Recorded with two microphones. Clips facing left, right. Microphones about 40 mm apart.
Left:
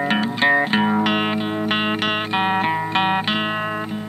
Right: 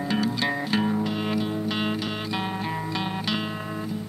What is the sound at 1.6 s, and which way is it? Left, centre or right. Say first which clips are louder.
Music: left 6 dB; left.